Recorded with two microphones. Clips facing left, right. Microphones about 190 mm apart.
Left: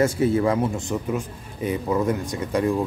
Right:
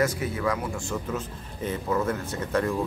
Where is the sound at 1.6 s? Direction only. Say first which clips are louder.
Left 4 dB; 15° left (ahead or behind).